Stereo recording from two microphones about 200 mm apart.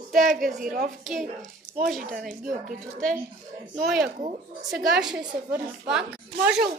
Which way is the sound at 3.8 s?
Centre (ahead or behind).